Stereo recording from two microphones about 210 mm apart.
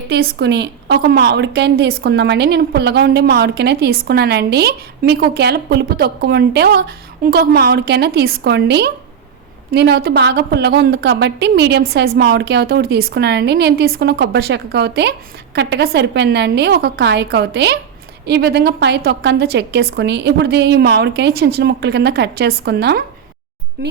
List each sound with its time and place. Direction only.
0.1 s a woman's voice: 55° right (ahead or behind)